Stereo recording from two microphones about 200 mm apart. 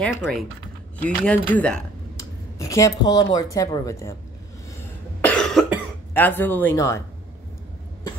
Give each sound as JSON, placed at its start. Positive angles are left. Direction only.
{"t": 0.0, "sound": "speech", "side_deg": 5}
{"t": 2.1, "sound": "speech", "side_deg": 15}
{"t": 5.2, "sound": "cough", "side_deg": 5}
{"t": 6.1, "sound": "speech", "side_deg": 10}